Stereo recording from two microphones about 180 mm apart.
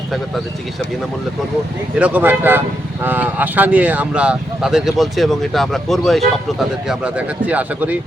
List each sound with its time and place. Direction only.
2.0 s speech: 10° right (ahead or behind)